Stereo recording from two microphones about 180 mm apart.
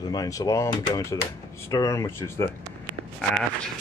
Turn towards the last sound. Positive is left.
turn(degrees=5)  # may be behind; listen again after turning